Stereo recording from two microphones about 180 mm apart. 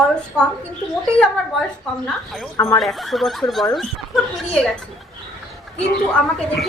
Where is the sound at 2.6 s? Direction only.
20° left (ahead or behind).